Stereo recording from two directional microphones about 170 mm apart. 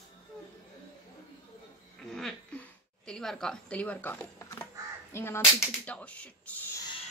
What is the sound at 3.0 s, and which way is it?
Speech, 5° left (ahead or behind).